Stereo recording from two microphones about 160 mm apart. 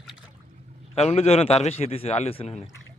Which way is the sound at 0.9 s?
40° left (ahead or behind).